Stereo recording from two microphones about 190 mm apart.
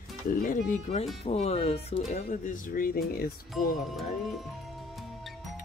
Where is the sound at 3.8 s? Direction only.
Centre (ahead or behind).